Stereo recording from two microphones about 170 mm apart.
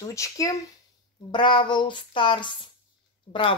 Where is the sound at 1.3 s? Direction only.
30° left (ahead or behind).